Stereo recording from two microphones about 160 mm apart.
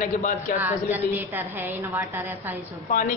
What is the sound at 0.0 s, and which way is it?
Speech, 55° left (ahead or behind).